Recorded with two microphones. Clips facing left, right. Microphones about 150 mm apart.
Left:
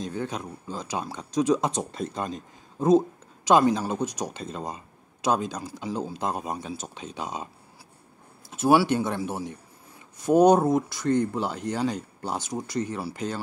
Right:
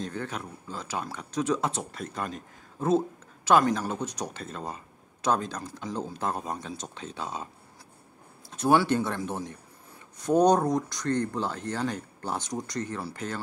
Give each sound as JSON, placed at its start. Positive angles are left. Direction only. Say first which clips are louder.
{"t": 0.0, "sound": "speech", "louder": "left 3 dB", "side_deg": 15}
{"t": 8.5, "sound": "speech", "louder": "left 2 dB", "side_deg": 10}